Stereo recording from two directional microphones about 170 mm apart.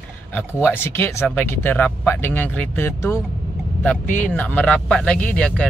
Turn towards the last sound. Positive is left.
turn(degrees=5)  # may be behind; listen again after turning